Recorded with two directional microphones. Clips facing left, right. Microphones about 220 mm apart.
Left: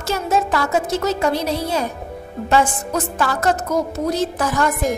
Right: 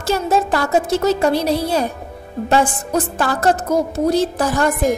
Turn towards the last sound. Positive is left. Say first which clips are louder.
# right 3 dB
turn(degrees=0)  # may be behind; listen again after turning